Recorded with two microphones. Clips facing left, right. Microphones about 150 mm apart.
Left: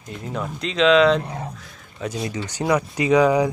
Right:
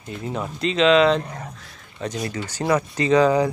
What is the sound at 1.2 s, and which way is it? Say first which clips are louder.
Speech: left 3 dB; 25° left (ahead or behind).